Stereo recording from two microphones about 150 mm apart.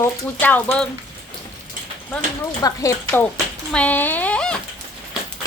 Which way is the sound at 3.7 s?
10° left (ahead or behind).